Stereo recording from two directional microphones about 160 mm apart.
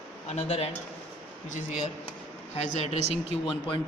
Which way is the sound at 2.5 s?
40° left (ahead or behind).